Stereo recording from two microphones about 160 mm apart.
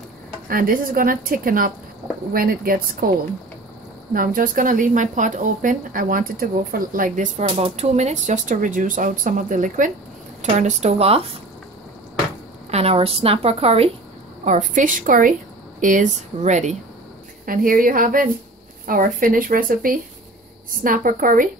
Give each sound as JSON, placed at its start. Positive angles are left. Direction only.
{"t": 0.5, "sound": "speech", "side_deg": -60}
{"t": 4.1, "sound": "speech", "side_deg": -60}
{"t": 7.2, "sound": "speech", "side_deg": -45}
{"t": 10.4, "sound": "speech", "side_deg": -45}
{"t": 12.7, "sound": "a woman's voice", "side_deg": -40}
{"t": 14.4, "sound": "speech", "side_deg": -50}
{"t": 17.5, "sound": "speech", "side_deg": -60}